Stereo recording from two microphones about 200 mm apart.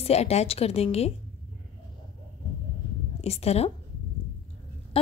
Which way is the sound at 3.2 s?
30° left (ahead or behind).